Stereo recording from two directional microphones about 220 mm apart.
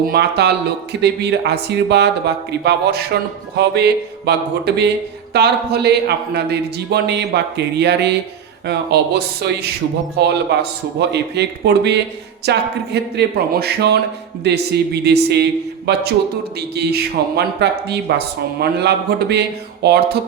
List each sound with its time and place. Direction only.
0.0 s speech: 45° right (ahead or behind)